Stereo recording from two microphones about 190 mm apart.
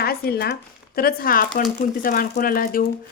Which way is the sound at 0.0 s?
55° left (ahead or behind).